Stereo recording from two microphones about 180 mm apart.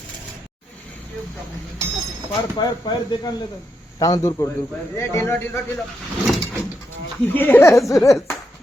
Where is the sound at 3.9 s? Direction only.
20° left (ahead or behind).